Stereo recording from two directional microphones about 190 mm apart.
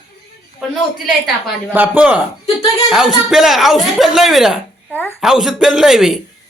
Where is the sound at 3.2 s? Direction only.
Centre (ahead or behind).